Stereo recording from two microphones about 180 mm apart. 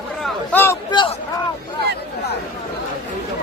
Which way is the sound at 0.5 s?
10° left (ahead or behind).